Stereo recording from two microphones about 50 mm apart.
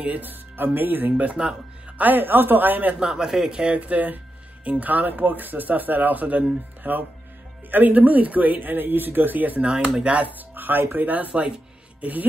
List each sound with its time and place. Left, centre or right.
0.0 s speech: right
1.1 s speech: right
2.0 s speech: right
2.9 s speech: centre; by 9.6 s right
9.6 s speech: centre
12.0 s music: right